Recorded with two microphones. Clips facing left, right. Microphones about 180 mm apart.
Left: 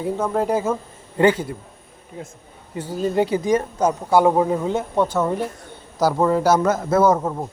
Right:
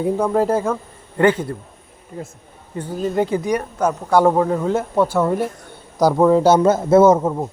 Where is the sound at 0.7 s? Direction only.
10° left (ahead or behind).